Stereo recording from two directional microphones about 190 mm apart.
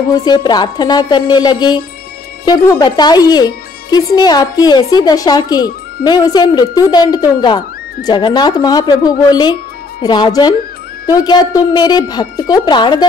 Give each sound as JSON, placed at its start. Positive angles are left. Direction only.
{"t": 0.1, "sound": "speech", "side_deg": 20}